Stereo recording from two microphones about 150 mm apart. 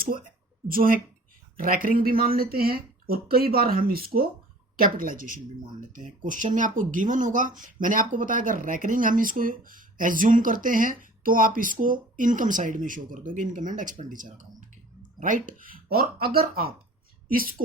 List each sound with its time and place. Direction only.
0.0 s a woman's voice: 70° right (ahead or behind); by 4.3 s 85° right
4.8 s a woman's voice: 65° right (ahead or behind); by 16.7 s 90° right
17.2 s a woman's voice: 70° right (ahead or behind)